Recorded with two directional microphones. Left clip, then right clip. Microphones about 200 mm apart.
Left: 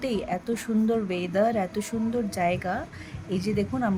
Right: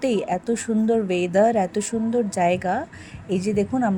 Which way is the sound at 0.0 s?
20° right (ahead or behind).